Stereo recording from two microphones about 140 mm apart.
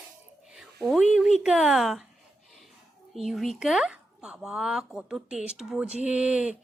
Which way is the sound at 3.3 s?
Centre (ahead or behind).